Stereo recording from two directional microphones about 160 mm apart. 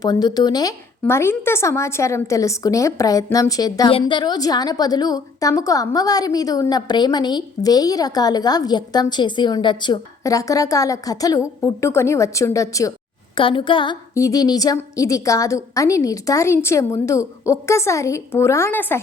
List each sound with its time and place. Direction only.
0.0 s a woman's voice: 25° left (ahead or behind)
13.3 s a woman's voice: 30° left (ahead or behind)
14.1 s a woman's voice: 20° left (ahead or behind)